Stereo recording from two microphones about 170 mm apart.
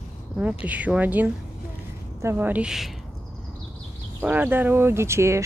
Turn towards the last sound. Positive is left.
turn(degrees=-15)  # may be behind; listen again after turning